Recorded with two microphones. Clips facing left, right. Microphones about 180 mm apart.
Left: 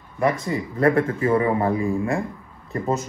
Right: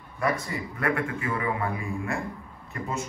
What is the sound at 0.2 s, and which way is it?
A man's voice, 30° left (ahead or behind).